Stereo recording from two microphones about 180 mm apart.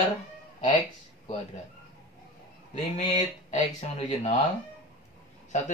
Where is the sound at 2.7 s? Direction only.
40° left (ahead or behind).